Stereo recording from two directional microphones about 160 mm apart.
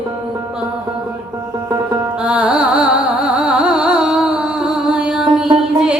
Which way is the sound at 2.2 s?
10° right (ahead or behind).